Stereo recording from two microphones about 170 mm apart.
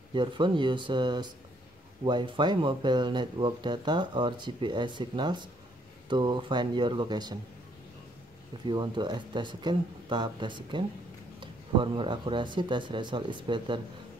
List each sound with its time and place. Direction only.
0.1 s speech: 30° right (ahead or behind)
8.6 s speech: 25° right (ahead or behind)